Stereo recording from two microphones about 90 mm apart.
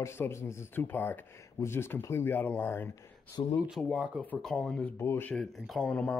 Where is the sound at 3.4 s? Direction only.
60° left (ahead or behind).